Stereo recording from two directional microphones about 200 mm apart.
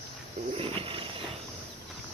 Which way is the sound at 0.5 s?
30° right (ahead or behind).